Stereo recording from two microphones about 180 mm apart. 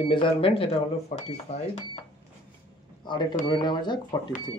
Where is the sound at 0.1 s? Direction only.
30° left (ahead or behind).